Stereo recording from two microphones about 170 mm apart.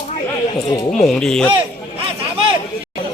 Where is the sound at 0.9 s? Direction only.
Centre (ahead or behind).